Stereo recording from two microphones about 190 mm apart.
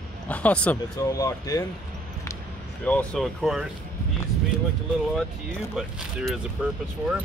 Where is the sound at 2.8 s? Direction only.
5° left (ahead or behind).